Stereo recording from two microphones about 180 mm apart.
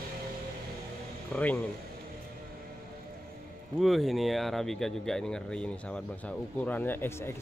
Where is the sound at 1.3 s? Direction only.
10° left (ahead or behind).